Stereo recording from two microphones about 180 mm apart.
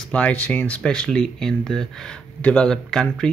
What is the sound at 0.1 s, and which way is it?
Speech, 5° left (ahead or behind).